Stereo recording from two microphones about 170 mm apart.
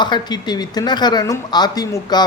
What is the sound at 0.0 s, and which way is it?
Speech, 25° left (ahead or behind).